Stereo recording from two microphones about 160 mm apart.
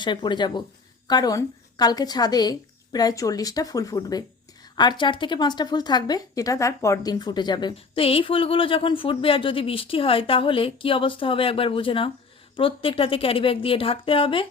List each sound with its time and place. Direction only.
0.0 s a woman's voice: 30° left (ahead or behind)